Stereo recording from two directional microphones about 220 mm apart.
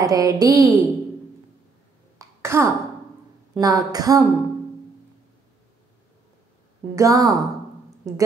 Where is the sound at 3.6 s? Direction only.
15° right (ahead or behind).